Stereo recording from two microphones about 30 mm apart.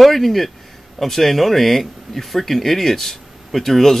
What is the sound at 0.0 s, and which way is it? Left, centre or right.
Speech, centre.